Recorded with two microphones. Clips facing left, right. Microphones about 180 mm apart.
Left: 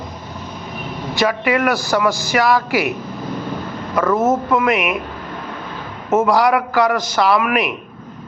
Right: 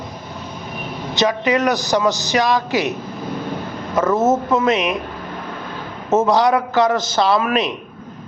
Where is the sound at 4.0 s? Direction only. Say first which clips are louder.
Even; 25° right (ahead or behind).